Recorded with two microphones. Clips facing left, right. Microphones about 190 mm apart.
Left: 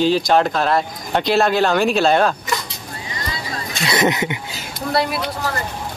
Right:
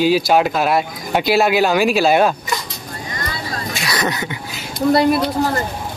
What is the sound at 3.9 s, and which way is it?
Speech, 25° left (ahead or behind).